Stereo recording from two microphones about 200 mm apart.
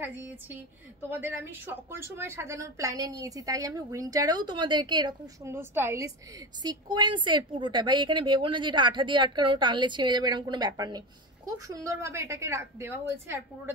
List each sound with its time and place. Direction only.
0.0 s a woman's voice: 10° right (ahead or behind)